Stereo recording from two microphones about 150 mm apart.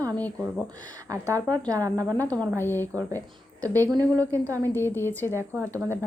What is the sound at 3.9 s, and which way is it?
Speech, 25° right (ahead or behind).